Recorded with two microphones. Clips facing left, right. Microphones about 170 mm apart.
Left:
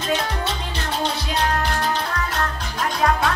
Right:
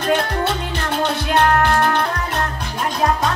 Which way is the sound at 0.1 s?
55° right (ahead or behind).